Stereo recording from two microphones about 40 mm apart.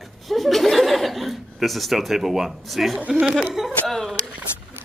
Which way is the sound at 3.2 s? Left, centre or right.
Right.